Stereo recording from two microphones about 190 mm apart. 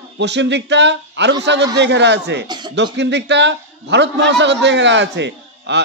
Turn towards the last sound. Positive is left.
turn(degrees=-65)  # may be behind; listen again after turning